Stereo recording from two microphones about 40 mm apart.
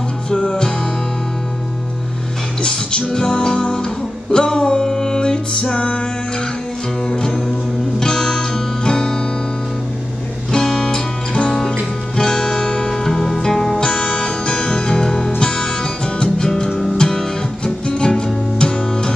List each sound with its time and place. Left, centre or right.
0.3 s music: centre
2.6 s music: left
7.2 s music: centre
10.5 s music: centre
12.2 s music: centre
12.9 s music: centre
13.8 s music: left